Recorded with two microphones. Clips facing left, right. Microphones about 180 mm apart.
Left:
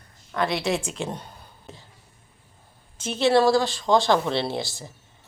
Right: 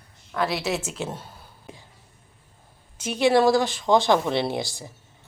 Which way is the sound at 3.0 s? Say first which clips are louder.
Even; 10° right (ahead or behind).